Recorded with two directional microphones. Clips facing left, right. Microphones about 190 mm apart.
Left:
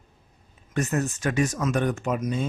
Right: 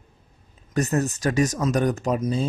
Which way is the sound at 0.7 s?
40° right (ahead or behind).